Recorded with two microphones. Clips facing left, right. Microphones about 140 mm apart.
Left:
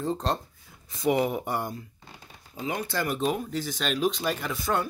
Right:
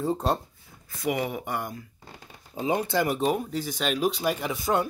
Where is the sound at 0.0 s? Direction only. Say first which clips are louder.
Right 2 dB; 10° right (ahead or behind).